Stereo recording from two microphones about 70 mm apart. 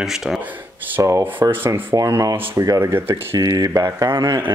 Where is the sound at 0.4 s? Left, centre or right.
Right.